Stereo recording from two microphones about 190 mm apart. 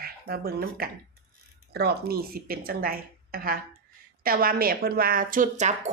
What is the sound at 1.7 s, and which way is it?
A woman's voice, 55° right (ahead or behind).